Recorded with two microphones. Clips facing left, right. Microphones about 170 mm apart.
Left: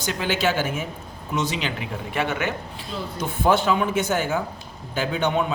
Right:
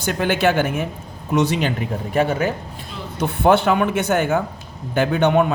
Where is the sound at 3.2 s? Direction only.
65° right (ahead or behind).